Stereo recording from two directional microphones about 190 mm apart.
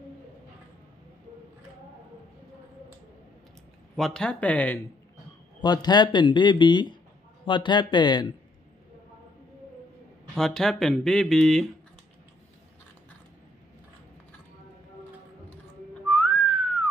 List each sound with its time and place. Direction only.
3.9 s speech: 5° left (ahead or behind)
5.6 s speech: 20° left (ahead or behind)
10.3 s speech: 5° left (ahead or behind)
16.1 s whistling: 5° left (ahead or behind)